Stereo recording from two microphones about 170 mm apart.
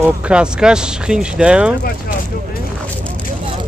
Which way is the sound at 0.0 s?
5° right (ahead or behind).